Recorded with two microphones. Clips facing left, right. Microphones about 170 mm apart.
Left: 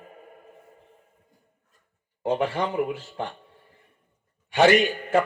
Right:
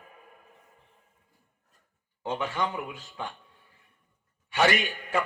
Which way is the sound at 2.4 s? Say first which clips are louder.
Left 4 dB; 35° left (ahead or behind).